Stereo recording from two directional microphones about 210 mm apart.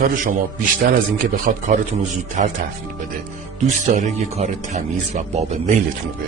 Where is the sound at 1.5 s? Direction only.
40° right (ahead or behind).